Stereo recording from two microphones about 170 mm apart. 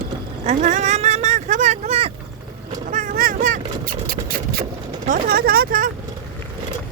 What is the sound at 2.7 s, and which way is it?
Vehicle, 50° right (ahead or behind).